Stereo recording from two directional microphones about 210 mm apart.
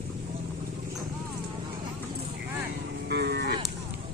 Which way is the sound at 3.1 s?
50° right (ahead or behind).